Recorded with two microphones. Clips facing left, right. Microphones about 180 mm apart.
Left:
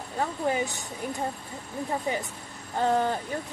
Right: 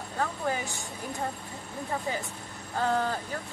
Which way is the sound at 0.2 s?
20° left (ahead or behind).